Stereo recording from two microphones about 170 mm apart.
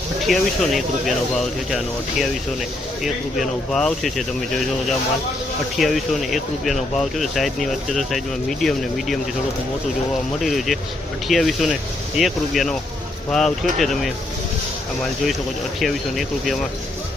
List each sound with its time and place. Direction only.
0.3 s speech: centre (ahead or behind)
5.7 s speech: centre (ahead or behind)
10.4 s speech: centre (ahead or behind)
15.8 s speech: centre (ahead or behind)